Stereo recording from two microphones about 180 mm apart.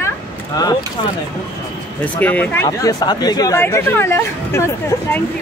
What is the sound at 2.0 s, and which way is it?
Speech, 10° left (ahead or behind).